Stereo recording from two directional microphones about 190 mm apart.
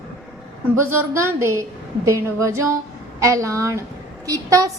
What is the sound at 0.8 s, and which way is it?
A woman's voice, 15° right (ahead or behind).